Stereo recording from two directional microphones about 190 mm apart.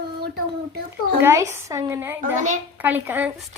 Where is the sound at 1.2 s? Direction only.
15° right (ahead or behind).